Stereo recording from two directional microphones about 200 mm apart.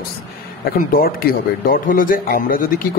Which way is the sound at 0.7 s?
45° left (ahead or behind).